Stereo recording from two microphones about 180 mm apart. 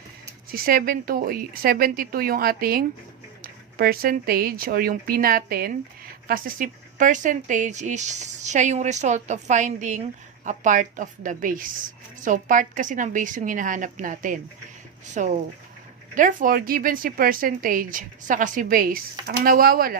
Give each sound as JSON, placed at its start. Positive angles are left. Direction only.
{"t": 0.5, "sound": "speech", "side_deg": -55}